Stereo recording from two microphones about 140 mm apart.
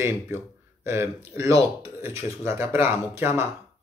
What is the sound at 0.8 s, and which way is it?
Speech, 20° right (ahead or behind).